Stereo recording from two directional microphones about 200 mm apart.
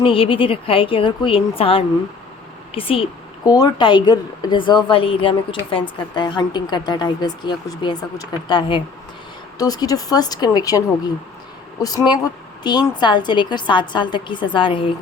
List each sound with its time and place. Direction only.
0.0 s a woman's voice: 25° left (ahead or behind)